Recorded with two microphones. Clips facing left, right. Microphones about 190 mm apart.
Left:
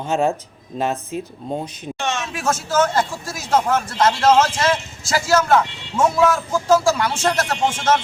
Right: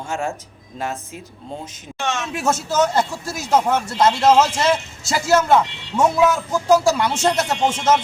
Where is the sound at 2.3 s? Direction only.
20° right (ahead or behind).